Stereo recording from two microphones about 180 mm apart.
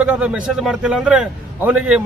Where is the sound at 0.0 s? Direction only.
5° right (ahead or behind).